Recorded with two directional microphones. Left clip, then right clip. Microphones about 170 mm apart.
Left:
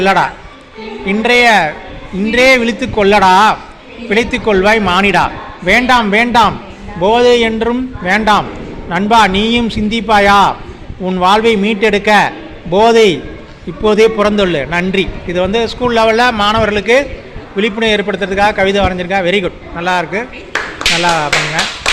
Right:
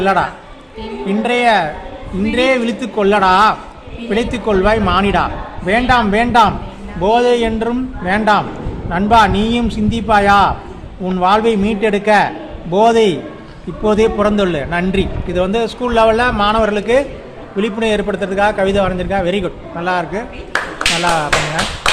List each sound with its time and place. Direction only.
0.0 s a man's voice: 10° left (ahead or behind)